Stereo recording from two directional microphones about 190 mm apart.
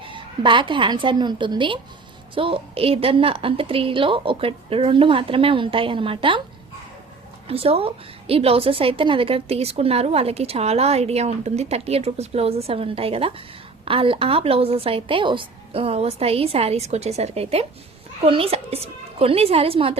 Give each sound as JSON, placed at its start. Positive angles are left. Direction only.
{"t": 0.0, "sound": "a woman's voice", "side_deg": -25}
{"t": 7.4, "sound": "a woman's voice", "side_deg": -30}